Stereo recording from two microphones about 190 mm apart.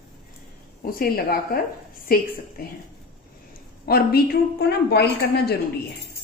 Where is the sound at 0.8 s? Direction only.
50° left (ahead or behind).